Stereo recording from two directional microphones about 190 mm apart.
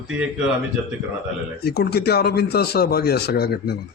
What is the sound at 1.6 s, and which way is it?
Speech, 60° left (ahead or behind).